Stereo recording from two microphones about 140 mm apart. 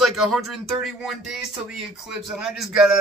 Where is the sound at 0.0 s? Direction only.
Centre (ahead or behind).